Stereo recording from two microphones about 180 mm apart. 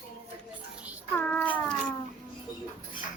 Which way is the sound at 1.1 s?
10° left (ahead or behind).